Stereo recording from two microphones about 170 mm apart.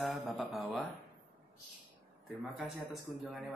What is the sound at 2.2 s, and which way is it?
Speech, centre (ahead or behind).